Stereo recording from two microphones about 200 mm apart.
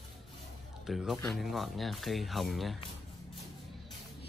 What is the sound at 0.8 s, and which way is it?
Speech, centre (ahead or behind).